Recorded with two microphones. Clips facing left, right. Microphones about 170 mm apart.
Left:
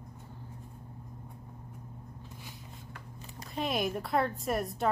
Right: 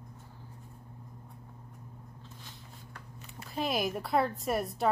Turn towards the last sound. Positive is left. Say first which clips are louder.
# right 1 dB
turn(degrees=0)  # may be behind; listen again after turning